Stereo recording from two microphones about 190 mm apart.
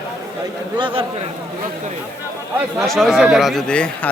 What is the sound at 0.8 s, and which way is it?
Speech, 25° right (ahead or behind).